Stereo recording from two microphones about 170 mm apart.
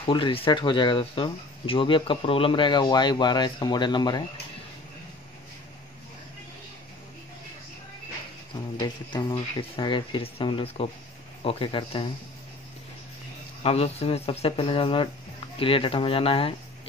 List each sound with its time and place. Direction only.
0.0 s speech: 30° left (ahead or behind)
8.7 s speech: 25° left (ahead or behind)
13.6 s speech: 35° left (ahead or behind)